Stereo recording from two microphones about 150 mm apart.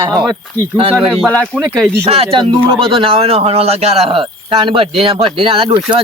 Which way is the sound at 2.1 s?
40° right (ahead or behind).